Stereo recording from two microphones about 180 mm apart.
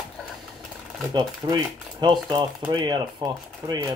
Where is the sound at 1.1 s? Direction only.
25° right (ahead or behind).